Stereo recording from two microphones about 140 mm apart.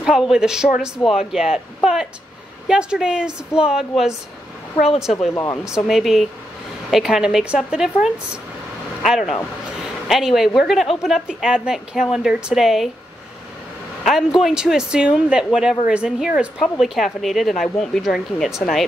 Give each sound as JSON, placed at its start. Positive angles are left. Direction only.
{"t": 0.0, "sound": "a woman's voice", "side_deg": -5}
{"t": 5.3, "sound": "speech", "side_deg": 20}
{"t": 5.9, "sound": "a woman's voice", "side_deg": 0}
{"t": 14.0, "sound": "a woman's voice", "side_deg": 0}